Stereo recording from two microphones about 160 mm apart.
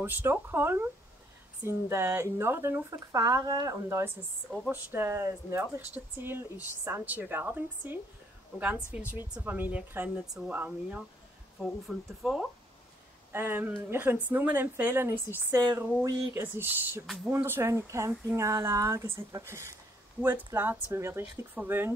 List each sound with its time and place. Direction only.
0.0 s speech: 15° right (ahead or behind)
13.3 s speech: 15° right (ahead or behind)